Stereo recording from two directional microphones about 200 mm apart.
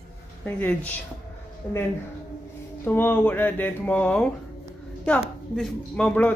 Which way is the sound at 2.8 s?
10° left (ahead or behind).